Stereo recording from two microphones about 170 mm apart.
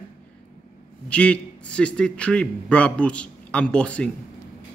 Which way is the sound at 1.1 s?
5° left (ahead or behind).